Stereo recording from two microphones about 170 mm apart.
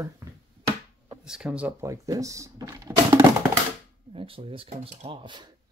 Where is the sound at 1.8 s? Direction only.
20° right (ahead or behind).